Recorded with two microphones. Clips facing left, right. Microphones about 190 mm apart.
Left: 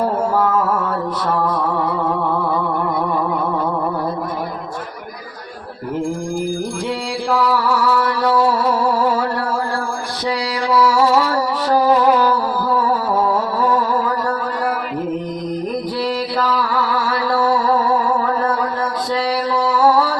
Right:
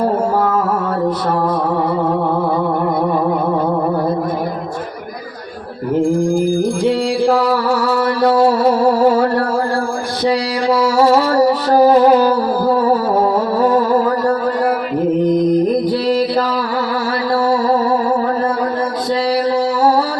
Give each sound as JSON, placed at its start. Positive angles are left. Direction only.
{"t": 7.3, "sound": "music", "side_deg": -35}
{"t": 10.2, "sound": "mantra", "side_deg": -35}
{"t": 11.7, "sound": "music", "side_deg": -35}